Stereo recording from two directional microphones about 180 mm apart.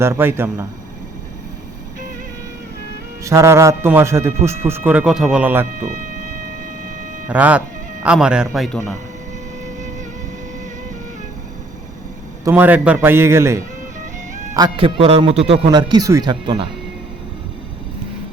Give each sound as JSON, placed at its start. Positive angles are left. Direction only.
{"t": 0.0, "sound": "speech", "side_deg": -15}
{"t": 3.2, "sound": "speech", "side_deg": -15}
{"t": 7.3, "sound": "speech", "side_deg": -10}
{"t": 12.5, "sound": "speech", "side_deg": -10}